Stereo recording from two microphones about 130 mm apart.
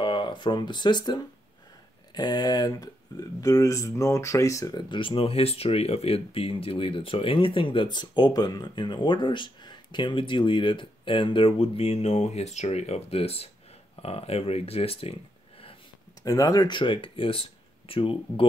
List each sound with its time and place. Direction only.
0.0 s speech: 40° left (ahead or behind)
16.2 s speech: 25° left (ahead or behind); by 18.5 s 45° left (ahead or behind)